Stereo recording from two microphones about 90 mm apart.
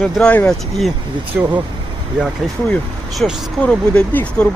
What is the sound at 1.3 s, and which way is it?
Speech, 15° right (ahead or behind).